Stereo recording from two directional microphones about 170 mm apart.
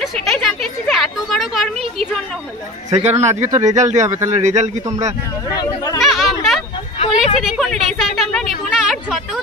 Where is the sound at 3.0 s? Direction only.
40° right (ahead or behind).